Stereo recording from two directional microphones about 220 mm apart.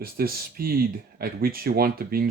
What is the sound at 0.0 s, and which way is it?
Speech, 45° right (ahead or behind).